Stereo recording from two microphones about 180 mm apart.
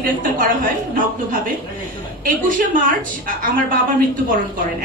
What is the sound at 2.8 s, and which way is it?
A woman's voice, 50° right (ahead or behind).